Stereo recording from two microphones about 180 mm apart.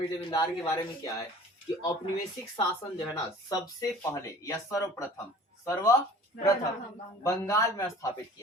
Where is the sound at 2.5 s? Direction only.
25° left (ahead or behind).